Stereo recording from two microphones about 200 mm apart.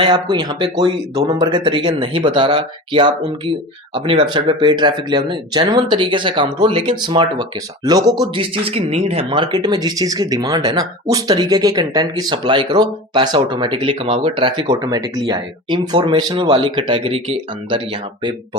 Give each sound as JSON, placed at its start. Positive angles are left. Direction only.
{"t": 0.0, "sound": "speech", "side_deg": -20}